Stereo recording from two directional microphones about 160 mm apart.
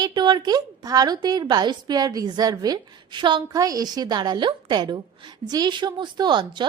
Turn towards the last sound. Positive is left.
turn(degrees=-30)  # may be behind; listen again after turning